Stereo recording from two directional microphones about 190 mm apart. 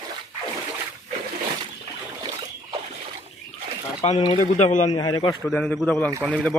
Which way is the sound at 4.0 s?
35° left (ahead or behind).